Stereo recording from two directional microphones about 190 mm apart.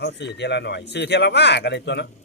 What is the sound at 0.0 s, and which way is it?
Speech, 65° left (ahead or behind).